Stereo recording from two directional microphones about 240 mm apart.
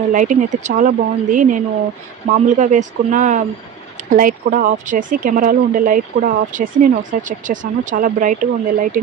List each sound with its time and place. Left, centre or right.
0.1 s speech: right